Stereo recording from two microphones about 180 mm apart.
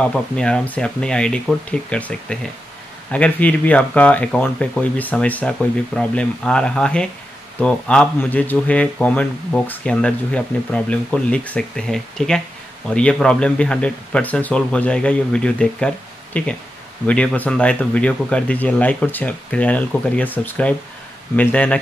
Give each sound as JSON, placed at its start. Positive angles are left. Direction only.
{"t": 0.0, "sound": "speech", "side_deg": 5}